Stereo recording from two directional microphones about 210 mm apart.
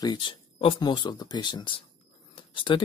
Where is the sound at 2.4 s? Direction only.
25° left (ahead or behind).